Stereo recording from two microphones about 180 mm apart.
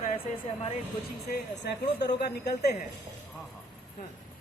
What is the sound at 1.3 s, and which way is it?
Speech, 70° left (ahead or behind).